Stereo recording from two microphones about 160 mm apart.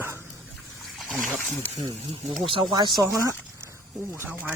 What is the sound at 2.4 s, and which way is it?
Speech, 30° right (ahead or behind).